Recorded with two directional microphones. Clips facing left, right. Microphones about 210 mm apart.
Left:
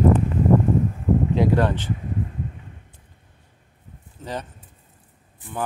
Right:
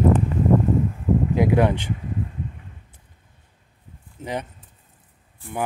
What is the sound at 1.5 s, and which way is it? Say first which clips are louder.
Speech: right 2 dB; 15° right (ahead or behind).